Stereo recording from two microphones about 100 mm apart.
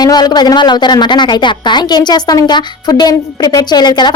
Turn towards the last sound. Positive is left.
turn(degrees=45)  # may be behind; listen again after turning